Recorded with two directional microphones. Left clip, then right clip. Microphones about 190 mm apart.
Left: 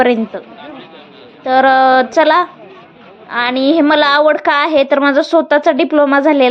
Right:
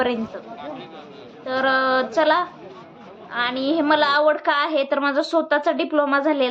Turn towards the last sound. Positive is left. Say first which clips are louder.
# left 9 dB
turn(degrees=40)  # may be behind; listen again after turning